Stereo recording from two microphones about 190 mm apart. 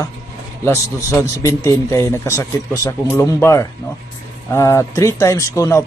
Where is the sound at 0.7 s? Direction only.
15° left (ahead or behind).